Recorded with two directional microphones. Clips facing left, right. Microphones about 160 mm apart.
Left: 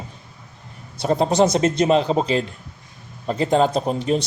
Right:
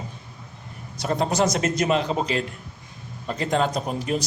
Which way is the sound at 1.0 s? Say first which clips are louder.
Left 5 dB; 30° left (ahead or behind).